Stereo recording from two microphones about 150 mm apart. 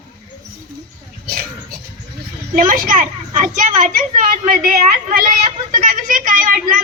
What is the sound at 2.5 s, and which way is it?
A child's voice, 60° right (ahead or behind).